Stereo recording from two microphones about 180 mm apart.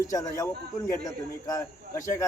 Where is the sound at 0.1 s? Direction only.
20° left (ahead or behind).